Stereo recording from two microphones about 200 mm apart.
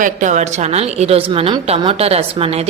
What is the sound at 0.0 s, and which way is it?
A woman's voice, 40° right (ahead or behind).